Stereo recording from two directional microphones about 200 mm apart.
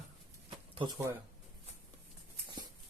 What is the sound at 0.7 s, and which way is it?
Speech, 20° right (ahead or behind).